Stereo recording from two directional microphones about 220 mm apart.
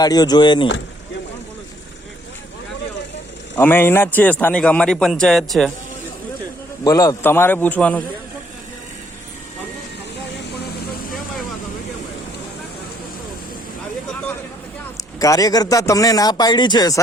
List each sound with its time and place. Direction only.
0.0 s speech: 20° left (ahead or behind)
3.6 s a man's voice: 10° left (ahead or behind)
6.8 s a man's voice: 15° left (ahead or behind)
15.2 s a man's voice: 15° left (ahead or behind)